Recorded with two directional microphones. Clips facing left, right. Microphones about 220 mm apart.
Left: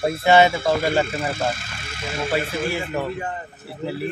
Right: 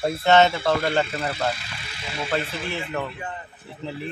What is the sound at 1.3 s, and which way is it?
Speech, 45° left (ahead or behind).